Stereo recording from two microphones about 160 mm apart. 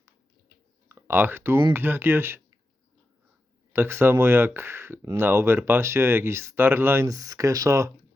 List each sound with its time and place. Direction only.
0.9 s speech: 15° right (ahead or behind)
3.7 s speech: 15° right (ahead or behind)